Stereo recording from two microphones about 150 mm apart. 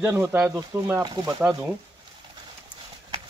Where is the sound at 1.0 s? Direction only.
25° right (ahead or behind).